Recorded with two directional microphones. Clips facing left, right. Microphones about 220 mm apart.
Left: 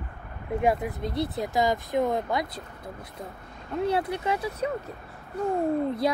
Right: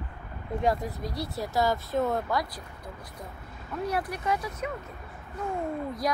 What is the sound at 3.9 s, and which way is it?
Speech, 25° left (ahead or behind).